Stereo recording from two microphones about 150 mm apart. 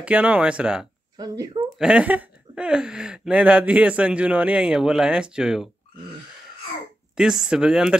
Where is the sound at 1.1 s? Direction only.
25° right (ahead or behind).